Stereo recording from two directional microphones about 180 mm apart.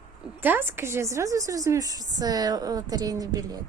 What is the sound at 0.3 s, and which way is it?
A woman's voice, 10° right (ahead or behind).